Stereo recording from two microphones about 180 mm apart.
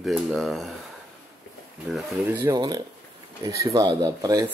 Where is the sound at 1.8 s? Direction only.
Centre (ahead or behind).